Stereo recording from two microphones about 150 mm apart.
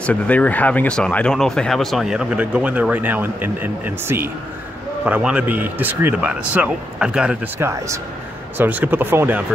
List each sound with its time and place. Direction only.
0.0 s speech: 10° left (ahead or behind)
7.6 s speech: 20° right (ahead or behind)